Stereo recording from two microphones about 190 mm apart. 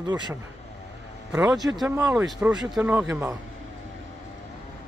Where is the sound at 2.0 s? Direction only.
10° right (ahead or behind).